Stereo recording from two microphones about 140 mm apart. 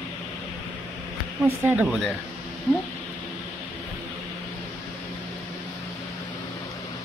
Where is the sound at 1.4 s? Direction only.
15° right (ahead or behind).